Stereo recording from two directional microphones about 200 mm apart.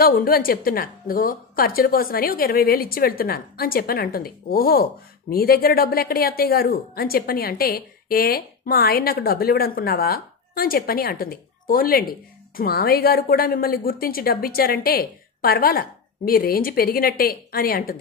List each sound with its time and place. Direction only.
0.0 s speech: 45° left (ahead or behind)